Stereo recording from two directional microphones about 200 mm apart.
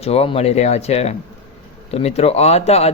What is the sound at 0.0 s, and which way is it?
Speech, 30° left (ahead or behind).